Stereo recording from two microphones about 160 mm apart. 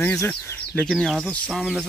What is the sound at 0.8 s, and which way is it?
Speech, 5° left (ahead or behind).